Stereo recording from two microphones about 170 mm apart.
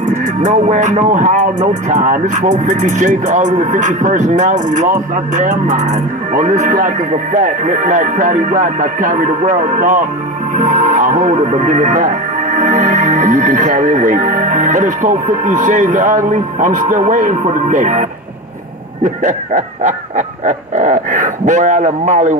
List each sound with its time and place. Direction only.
0.4 s speech: 45° right (ahead or behind)
19.0 s speech: 50° right (ahead or behind)